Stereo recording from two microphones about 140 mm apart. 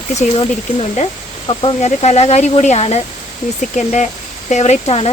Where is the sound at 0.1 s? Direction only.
55° left (ahead or behind).